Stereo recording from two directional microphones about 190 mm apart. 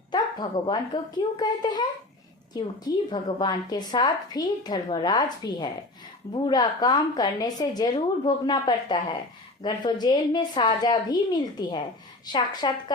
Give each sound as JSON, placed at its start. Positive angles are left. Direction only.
{"t": 0.1, "sound": "a woman's voice", "side_deg": 25}